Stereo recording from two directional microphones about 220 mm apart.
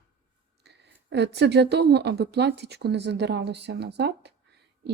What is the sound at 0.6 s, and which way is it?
Speech, 50° right (ahead or behind).